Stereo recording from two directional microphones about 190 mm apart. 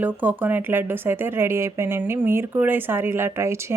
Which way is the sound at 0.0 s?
10° right (ahead or behind).